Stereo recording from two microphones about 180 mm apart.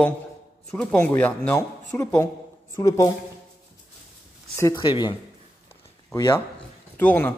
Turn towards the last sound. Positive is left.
turn(degrees=10)  # may be behind; listen again after turning